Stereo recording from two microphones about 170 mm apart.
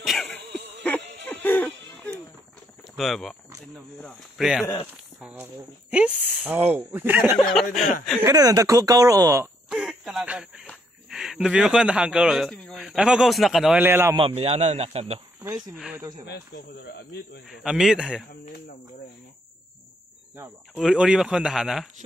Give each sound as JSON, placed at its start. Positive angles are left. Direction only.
{"t": 0.0, "sound": "cough", "side_deg": 0}
{"t": 1.4, "sound": "music", "side_deg": 10}
{"t": 3.0, "sound": "a man's voice", "side_deg": 0}
{"t": 8.2, "sound": "speech", "side_deg": -20}
{"t": 9.7, "sound": "a sound", "side_deg": 0}
{"t": 10.7, "sound": "speech", "side_deg": 0}
{"t": 14.1, "sound": "speech", "side_deg": -35}
{"t": 16.0, "sound": "speech", "side_deg": -25}
{"t": 16.3, "sound": "speech", "side_deg": 75}
{"t": 17.5, "sound": "a man's voice", "side_deg": 0}
{"t": 20.7, "sound": "a man's voice", "side_deg": -5}